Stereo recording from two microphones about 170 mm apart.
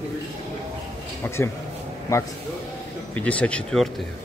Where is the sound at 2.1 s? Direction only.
20° left (ahead or behind).